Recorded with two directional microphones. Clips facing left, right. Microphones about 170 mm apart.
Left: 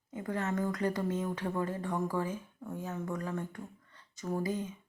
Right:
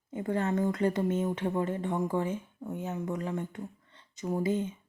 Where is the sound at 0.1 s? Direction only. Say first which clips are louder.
Right 5 dB; 30° right (ahead or behind).